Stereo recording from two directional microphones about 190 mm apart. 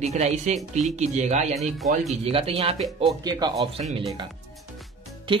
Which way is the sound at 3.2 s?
20° right (ahead or behind).